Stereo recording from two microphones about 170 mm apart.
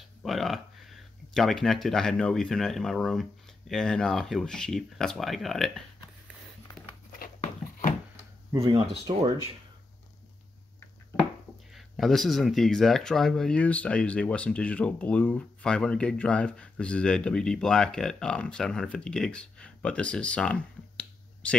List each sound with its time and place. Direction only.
0.2 s speech: centre (ahead or behind)
7.3 s a sound: 40° left (ahead or behind)
11.7 s speech: centre (ahead or behind)